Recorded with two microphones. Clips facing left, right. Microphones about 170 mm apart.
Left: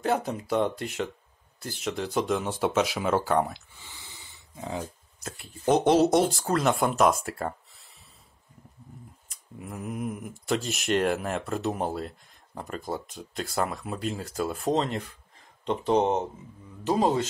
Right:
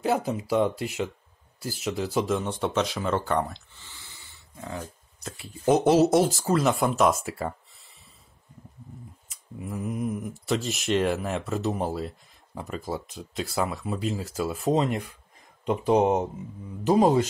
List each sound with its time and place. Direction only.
0.0 s speech: 5° right (ahead or behind); by 4.8 s 15° left (ahead or behind)
5.2 s speech: centre (ahead or behind)
9.3 s speech: centre (ahead or behind); by 17.3 s 15° right (ahead or behind)